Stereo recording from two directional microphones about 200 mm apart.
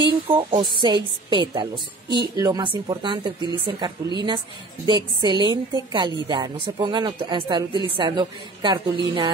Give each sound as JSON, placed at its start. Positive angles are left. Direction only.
{"t": 0.1, "sound": "a woman's voice", "side_deg": -25}